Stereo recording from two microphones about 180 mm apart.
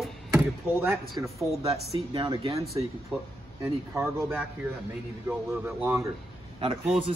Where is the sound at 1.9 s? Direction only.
30° right (ahead or behind).